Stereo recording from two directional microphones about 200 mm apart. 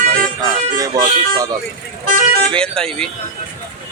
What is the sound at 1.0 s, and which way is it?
Speech, 15° right (ahead or behind).